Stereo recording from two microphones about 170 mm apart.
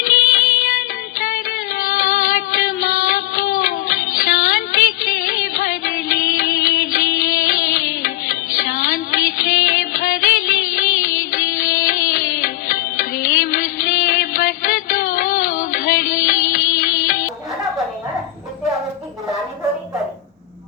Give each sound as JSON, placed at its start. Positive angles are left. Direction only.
{"t": 0.0, "sound": "music", "side_deg": 60}
{"t": 1.8, "sound": "music", "side_deg": 55}